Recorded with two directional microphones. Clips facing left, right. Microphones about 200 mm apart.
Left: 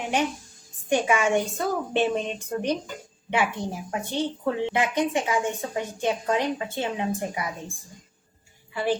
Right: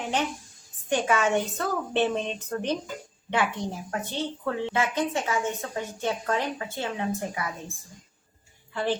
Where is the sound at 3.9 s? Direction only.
15° left (ahead or behind).